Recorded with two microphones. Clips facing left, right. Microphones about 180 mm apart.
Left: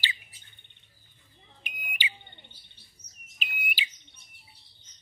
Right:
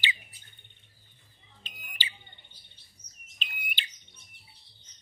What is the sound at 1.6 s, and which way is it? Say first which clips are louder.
Smoke detector: left 5 dB; 15° left (ahead or behind).